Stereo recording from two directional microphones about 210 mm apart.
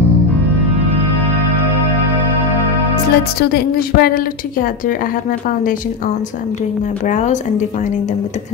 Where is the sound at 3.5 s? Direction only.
45° left (ahead or behind).